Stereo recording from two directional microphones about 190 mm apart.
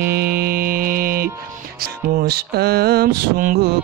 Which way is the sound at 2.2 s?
55° right (ahead or behind).